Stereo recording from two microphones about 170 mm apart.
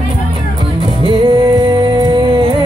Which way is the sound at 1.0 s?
30° right (ahead or behind).